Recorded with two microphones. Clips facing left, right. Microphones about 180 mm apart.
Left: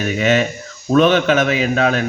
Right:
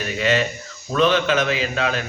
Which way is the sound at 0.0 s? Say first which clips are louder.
Left 5 dB; 55° left (ahead or behind).